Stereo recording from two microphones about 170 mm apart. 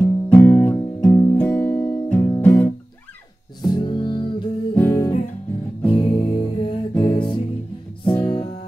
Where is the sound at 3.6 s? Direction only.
25° left (ahead or behind).